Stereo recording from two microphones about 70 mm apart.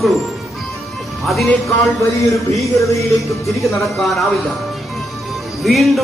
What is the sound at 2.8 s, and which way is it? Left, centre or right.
Music, left.